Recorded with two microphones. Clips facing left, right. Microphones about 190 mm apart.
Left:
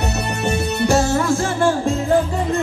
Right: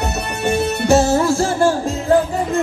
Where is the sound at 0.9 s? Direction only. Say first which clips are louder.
Right 4 dB; 30° right (ahead or behind).